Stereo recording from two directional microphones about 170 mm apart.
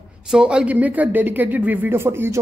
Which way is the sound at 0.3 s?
5° right (ahead or behind).